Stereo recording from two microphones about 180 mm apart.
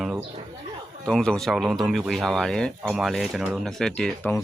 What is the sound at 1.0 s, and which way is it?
Speech, 5° left (ahead or behind).